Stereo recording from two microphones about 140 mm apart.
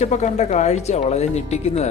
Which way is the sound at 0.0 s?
55° left (ahead or behind).